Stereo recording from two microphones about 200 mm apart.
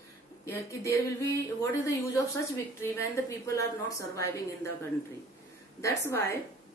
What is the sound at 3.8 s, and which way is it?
Speech, 15° left (ahead or behind).